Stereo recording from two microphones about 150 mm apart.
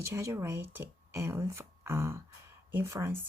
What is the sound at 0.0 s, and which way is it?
Speech, 20° right (ahead or behind).